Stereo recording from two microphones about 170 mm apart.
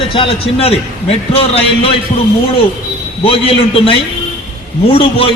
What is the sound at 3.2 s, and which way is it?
A man's voice, 35° left (ahead or behind).